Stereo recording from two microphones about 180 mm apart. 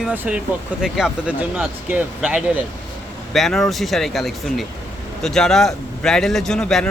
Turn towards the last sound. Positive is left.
turn(degrees=5)  # may be behind; listen again after turning